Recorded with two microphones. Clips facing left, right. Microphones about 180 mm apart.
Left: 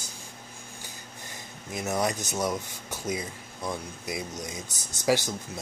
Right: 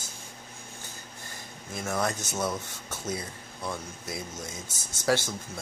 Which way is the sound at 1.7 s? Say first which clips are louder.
Left 2 dB; 20° left (ahead or behind).